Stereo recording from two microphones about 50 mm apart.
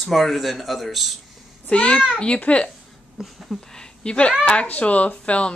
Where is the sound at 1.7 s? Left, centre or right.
Left.